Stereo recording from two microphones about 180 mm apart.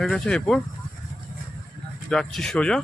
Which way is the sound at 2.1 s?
5° left (ahead or behind).